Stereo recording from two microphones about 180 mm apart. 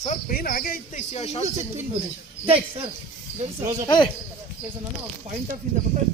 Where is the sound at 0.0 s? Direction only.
45° left (ahead or behind).